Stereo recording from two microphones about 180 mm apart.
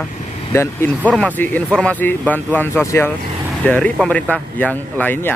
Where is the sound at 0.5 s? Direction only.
15° left (ahead or behind).